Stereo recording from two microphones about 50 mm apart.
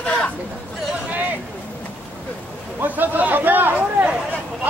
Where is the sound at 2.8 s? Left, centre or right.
Right.